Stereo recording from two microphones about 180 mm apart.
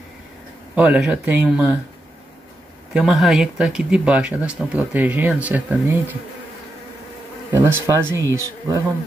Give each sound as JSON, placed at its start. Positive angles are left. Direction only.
{"t": 0.7, "sound": "speech", "side_deg": -5}
{"t": 2.9, "sound": "speech", "side_deg": 0}
{"t": 7.5, "sound": "speech", "side_deg": -15}